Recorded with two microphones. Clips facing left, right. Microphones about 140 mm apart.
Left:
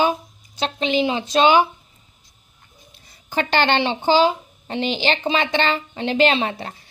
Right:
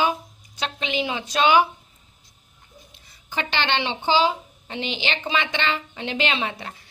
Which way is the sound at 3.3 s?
45° left (ahead or behind).